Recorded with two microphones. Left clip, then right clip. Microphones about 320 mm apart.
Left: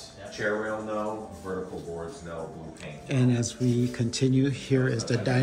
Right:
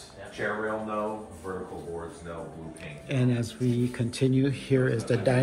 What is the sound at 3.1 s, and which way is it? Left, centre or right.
A man's voice, centre.